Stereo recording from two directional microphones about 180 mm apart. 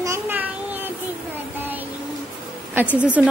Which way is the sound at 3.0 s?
10° right (ahead or behind).